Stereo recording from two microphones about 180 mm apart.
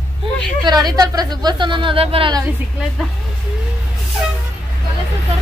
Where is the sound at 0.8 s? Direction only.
20° right (ahead or behind).